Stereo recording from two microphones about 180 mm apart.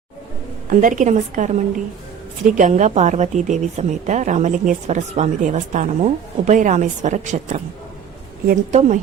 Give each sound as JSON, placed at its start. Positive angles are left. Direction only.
{"t": 0.7, "sound": "a woman's voice", "side_deg": -45}